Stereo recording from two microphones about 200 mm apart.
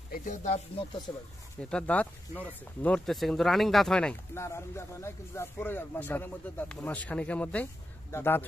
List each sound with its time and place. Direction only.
0.1 s speech: 40° left (ahead or behind)
1.1 s speech: 15° left (ahead or behind)